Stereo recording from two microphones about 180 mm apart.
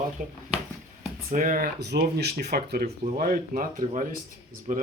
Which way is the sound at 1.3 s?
50° right (ahead or behind).